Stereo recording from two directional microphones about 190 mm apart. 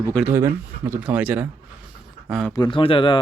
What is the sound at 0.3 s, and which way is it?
Speech, 10° right (ahead or behind).